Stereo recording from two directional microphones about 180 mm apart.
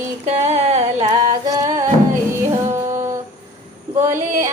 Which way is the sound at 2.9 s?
15° right (ahead or behind).